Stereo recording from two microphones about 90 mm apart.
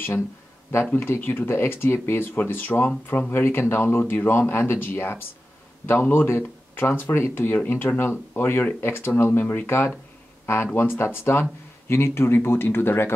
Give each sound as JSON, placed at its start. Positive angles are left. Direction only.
{"t": 0.9, "sound": "speech", "side_deg": 25}